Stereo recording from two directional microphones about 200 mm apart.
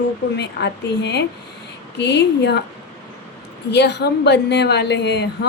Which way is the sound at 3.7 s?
60° left (ahead or behind).